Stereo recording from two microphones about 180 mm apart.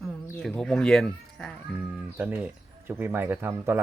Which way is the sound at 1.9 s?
10° right (ahead or behind).